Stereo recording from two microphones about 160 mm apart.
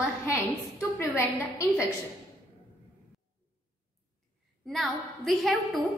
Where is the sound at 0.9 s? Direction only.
15° left (ahead or behind).